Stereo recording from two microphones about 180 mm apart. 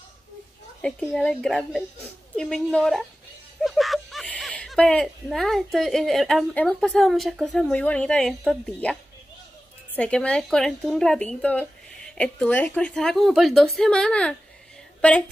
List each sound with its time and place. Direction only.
0.8 s speech: 5° left (ahead or behind)
9.9 s a woman's voice: 5° left (ahead or behind)